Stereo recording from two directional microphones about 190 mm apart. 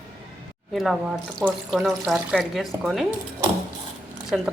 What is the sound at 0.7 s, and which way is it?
Speech, centre (ahead or behind).